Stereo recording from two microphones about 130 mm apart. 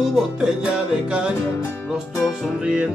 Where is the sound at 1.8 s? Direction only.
5° right (ahead or behind).